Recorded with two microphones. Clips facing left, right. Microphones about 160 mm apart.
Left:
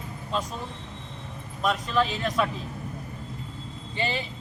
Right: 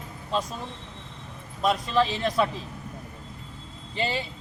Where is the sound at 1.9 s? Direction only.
30° right (ahead or behind).